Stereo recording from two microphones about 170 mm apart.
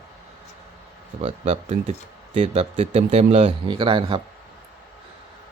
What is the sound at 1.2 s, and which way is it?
Speech, 40° right (ahead or behind).